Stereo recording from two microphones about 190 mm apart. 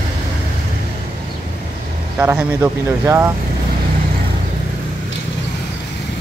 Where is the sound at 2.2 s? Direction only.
10° right (ahead or behind).